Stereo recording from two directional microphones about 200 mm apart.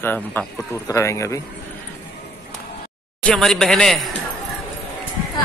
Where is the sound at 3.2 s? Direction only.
5° left (ahead or behind).